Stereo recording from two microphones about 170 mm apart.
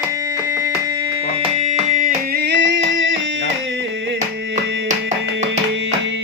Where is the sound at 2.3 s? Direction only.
90° right.